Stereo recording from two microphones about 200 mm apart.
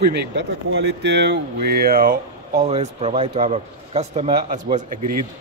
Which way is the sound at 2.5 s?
30° right (ahead or behind).